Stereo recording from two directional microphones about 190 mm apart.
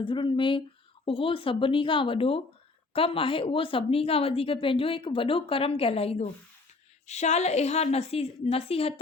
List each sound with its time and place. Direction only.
0.0 s a woman's voice: 25° left (ahead or behind)